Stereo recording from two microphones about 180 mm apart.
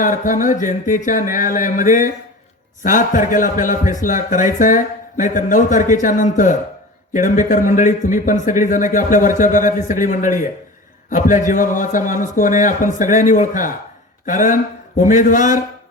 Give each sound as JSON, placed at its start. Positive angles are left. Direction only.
{"t": 0.0, "sound": "speech", "side_deg": 50}